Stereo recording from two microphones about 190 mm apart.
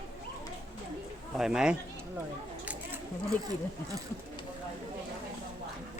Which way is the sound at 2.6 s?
5° right (ahead or behind).